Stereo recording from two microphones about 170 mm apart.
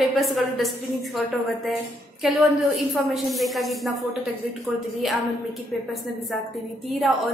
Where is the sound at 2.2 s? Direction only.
Centre (ahead or behind).